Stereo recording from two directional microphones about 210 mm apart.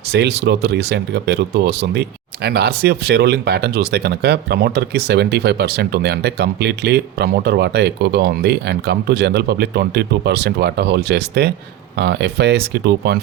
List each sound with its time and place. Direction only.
0.1 s speech: 55° right (ahead or behind)